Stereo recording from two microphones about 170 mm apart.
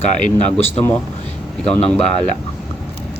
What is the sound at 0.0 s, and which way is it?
Speech, 45° left (ahead or behind).